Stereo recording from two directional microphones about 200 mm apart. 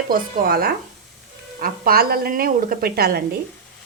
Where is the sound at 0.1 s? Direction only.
50° right (ahead or behind).